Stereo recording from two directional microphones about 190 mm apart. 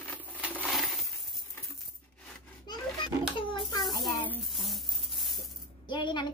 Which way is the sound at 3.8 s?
Centre (ahead or behind).